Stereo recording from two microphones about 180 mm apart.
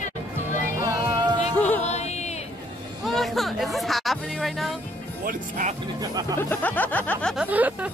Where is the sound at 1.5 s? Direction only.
10° left (ahead or behind).